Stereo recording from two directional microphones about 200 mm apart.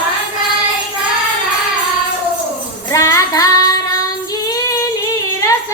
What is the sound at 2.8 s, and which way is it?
Child singing, 15° left (ahead or behind).